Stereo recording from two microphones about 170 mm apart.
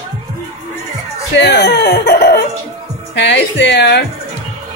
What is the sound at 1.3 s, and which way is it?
Speech, 80° left.